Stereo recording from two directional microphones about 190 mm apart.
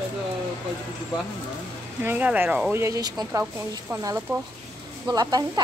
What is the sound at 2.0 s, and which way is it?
Speech, 10° right (ahead or behind).